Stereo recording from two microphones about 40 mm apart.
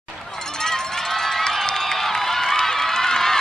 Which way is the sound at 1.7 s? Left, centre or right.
Centre.